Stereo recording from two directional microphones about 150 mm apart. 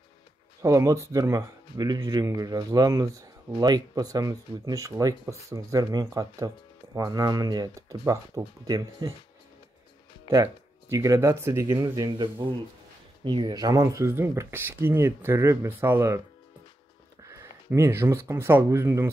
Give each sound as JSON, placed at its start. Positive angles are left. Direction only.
{"t": 0.6, "sound": "speech", "side_deg": -20}
{"t": 10.3, "sound": "speech", "side_deg": -20}
{"t": 17.2, "sound": "speech", "side_deg": -20}